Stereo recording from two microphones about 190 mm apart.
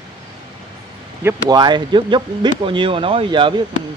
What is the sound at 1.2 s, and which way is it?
Speech, 20° right (ahead or behind).